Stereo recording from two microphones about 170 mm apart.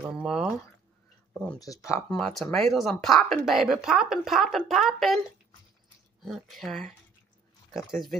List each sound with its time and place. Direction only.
0.0 s speech: 5° right (ahead or behind)
1.6 s speech: 20° left (ahead or behind)
2.0 s speech: 5° left (ahead or behind)
6.2 s speech: centre (ahead or behind)